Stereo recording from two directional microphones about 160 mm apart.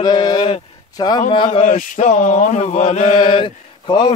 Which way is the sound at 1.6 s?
50° left (ahead or behind).